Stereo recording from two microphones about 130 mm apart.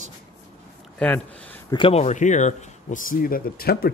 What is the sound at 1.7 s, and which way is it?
Speech, 45° left (ahead or behind).